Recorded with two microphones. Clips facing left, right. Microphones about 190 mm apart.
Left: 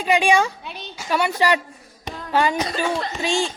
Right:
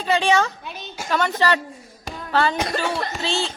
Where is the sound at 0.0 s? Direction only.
10° left (ahead or behind).